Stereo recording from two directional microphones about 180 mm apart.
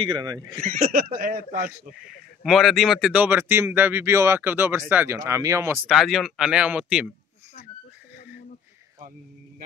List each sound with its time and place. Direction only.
0.0 s speech: 25° right (ahead or behind)
0.6 s speech: 45° right (ahead or behind)
1.5 s speech: 10° right (ahead or behind)
5.9 s speech: centre (ahead or behind)